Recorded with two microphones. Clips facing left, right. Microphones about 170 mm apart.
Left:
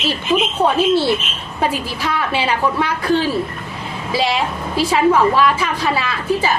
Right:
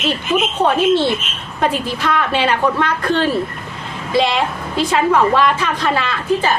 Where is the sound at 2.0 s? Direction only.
10° left (ahead or behind).